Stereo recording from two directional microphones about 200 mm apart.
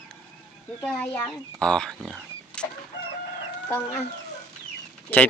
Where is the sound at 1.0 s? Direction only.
5° left (ahead or behind).